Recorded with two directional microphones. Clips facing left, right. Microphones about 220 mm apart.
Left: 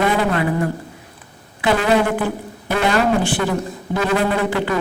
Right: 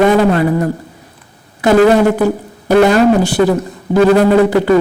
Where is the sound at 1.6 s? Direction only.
40° right (ahead or behind).